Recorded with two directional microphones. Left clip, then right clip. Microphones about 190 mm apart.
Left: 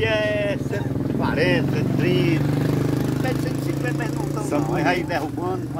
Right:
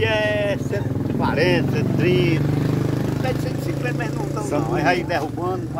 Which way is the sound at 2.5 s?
35° left (ahead or behind).